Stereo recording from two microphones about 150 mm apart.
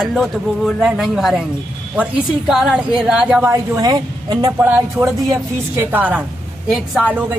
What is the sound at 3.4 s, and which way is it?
Speech, 20° right (ahead or behind).